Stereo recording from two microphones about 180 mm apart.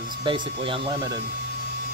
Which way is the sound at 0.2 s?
30° right (ahead or behind).